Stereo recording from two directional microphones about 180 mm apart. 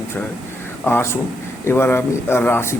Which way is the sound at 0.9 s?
10° left (ahead or behind).